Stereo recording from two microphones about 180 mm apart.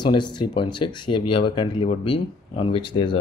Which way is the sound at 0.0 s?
25° left (ahead or behind).